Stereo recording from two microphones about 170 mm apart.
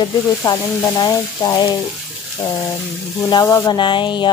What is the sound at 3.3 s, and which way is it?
Speech, 15° left (ahead or behind).